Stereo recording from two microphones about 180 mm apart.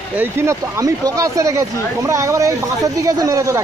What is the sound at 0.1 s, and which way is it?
Speech, 10° right (ahead or behind).